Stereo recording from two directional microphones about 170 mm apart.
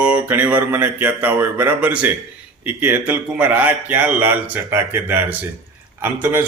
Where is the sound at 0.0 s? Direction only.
10° right (ahead or behind).